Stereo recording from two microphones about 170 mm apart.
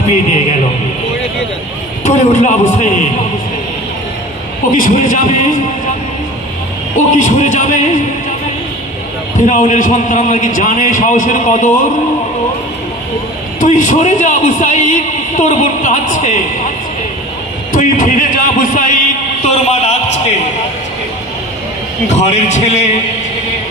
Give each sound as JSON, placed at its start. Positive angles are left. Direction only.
{"t": 2.0, "sound": "a man's voice", "side_deg": 45}
{"t": 4.7, "sound": "a man's voice", "side_deg": 50}
{"t": 7.2, "sound": "a man's voice", "side_deg": 45}
{"t": 9.5, "sound": "a man's voice", "side_deg": 45}
{"t": 13.6, "sound": "a man's voice", "side_deg": 45}
{"t": 17.7, "sound": "a sound", "side_deg": 50}
{"t": 22.0, "sound": "a man's voice", "side_deg": 40}